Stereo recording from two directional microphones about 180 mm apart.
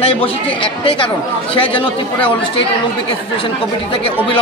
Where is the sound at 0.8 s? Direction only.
30° left (ahead or behind).